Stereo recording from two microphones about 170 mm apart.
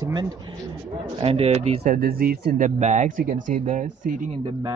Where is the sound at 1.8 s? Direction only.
65° right (ahead or behind).